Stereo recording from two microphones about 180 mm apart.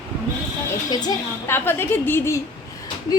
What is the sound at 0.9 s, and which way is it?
Speech, 20° left (ahead or behind).